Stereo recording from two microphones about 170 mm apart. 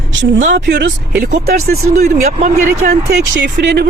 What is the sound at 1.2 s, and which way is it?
Speech, 60° right (ahead or behind).